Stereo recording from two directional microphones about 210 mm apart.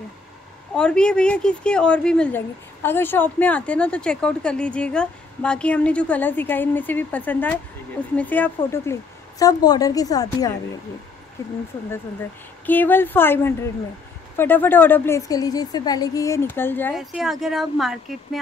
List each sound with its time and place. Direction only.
0.7 s a woman's voice: 5° left (ahead or behind)
12.6 s a woman's voice: 10° left (ahead or behind)
16.9 s a woman's voice: centre (ahead or behind)